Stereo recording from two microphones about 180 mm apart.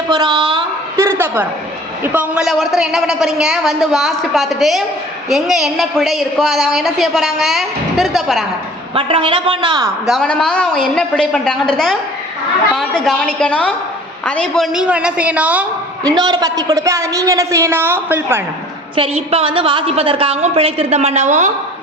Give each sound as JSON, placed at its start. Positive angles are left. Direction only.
{"t": 0.1, "sound": "a woman's voice", "side_deg": -25}
{"t": 1.0, "sound": "a woman's voice", "side_deg": -15}
{"t": 9.0, "sound": "a woman's voice", "side_deg": -30}
{"t": 10.1, "sound": "a woman's voice", "side_deg": 5}
{"t": 16.0, "sound": "a woman's voice", "side_deg": -25}
{"t": 18.9, "sound": "a woman's voice", "side_deg": -30}